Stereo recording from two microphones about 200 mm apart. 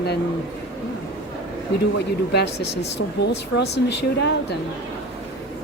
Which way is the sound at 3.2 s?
55° left (ahead or behind).